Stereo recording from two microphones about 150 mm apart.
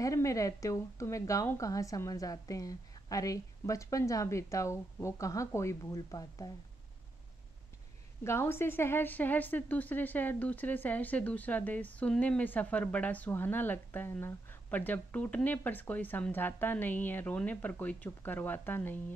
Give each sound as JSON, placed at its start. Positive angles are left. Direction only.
{"t": 0.0, "sound": "a woman's voice", "side_deg": 20}
{"t": 8.2, "sound": "a woman's voice", "side_deg": 15}